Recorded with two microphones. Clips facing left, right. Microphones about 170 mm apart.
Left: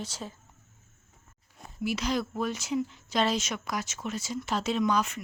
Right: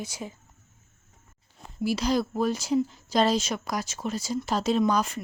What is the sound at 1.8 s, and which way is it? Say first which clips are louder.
Speech: right 4 dB; 35° right (ahead or behind).